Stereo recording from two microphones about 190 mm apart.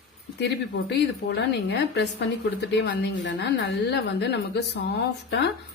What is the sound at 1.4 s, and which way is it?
A woman's voice, 65° left (ahead or behind).